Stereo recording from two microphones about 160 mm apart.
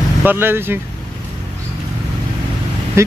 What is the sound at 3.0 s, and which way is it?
Vehicle, 15° right (ahead or behind).